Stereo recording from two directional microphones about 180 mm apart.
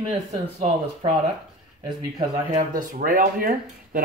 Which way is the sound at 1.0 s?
30° right (ahead or behind).